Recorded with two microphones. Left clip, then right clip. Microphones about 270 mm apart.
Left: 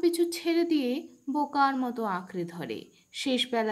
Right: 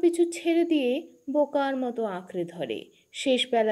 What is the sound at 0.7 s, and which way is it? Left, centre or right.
Speech, left.